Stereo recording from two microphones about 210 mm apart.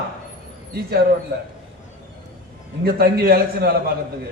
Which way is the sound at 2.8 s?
45° right (ahead or behind).